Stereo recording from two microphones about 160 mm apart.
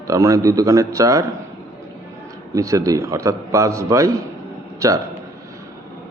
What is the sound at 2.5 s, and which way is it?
Speech, 20° right (ahead or behind).